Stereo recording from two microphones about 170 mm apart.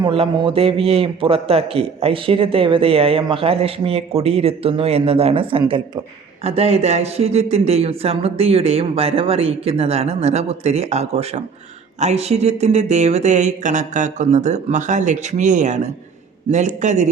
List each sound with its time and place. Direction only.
0.0 s a man's voice: 30° right (ahead or behind)